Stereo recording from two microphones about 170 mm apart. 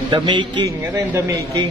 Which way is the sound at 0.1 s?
25° right (ahead or behind).